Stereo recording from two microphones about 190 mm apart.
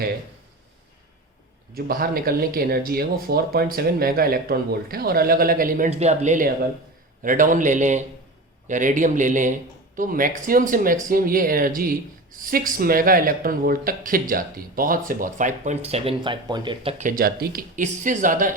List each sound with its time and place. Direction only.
1.7 s a man's voice: 50° right (ahead or behind); by 16.9 s 25° right (ahead or behind)
17.0 s a man's voice: 45° right (ahead or behind)